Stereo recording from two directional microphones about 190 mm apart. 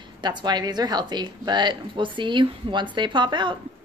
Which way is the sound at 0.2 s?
25° right (ahead or behind).